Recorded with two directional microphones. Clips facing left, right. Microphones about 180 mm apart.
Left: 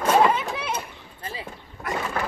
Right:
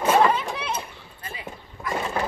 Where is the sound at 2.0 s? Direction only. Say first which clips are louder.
Right 2 dB; 20° right (ahead or behind).